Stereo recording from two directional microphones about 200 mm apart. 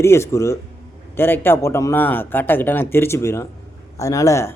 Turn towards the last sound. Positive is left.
turn(degrees=15)  # may be behind; listen again after turning